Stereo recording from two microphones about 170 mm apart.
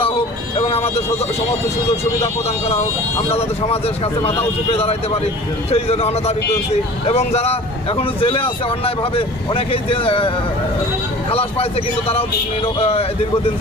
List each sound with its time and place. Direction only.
0.7 s speech: 35° left (ahead or behind)